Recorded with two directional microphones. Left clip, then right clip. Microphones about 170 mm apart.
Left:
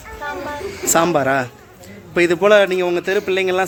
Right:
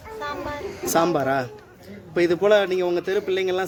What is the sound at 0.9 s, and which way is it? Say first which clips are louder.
A man's voice: left 5 dB; 15° left (ahead or behind).